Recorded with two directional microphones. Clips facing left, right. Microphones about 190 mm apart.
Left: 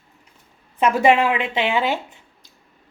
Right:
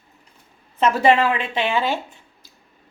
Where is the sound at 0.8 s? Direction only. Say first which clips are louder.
Even; 15° left (ahead or behind).